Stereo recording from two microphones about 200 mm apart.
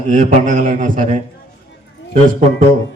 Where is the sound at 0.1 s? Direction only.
40° right (ahead or behind).